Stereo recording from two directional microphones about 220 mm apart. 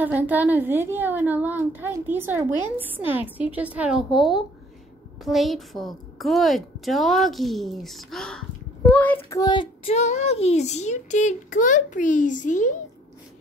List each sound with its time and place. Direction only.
0.0 s a woman's voice: 10° right (ahead or behind)
5.2 s a woman's voice: centre (ahead or behind); by 12.7 s 35° left (ahead or behind)